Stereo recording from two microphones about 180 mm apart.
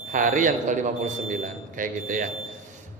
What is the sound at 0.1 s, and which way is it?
A man's voice, 45° right (ahead or behind).